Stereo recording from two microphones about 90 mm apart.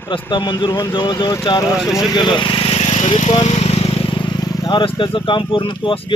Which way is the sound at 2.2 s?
65° left (ahead or behind).